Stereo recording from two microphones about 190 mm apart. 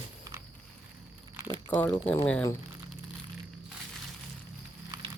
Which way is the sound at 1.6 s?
15° left (ahead or behind).